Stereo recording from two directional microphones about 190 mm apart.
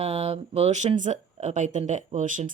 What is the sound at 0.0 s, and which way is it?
Speech, 35° right (ahead or behind).